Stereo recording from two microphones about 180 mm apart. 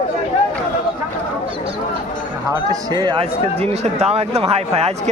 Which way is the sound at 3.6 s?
35° right (ahead or behind).